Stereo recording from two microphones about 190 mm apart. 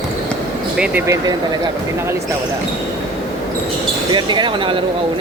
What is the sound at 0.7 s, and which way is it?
Speech, 5° right (ahead or behind).